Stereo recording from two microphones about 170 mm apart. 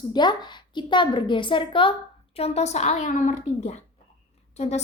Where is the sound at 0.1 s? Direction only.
25° left (ahead or behind).